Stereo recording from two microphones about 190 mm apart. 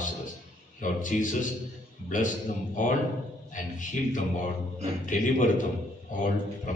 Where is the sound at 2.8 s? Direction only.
45° left (ahead or behind).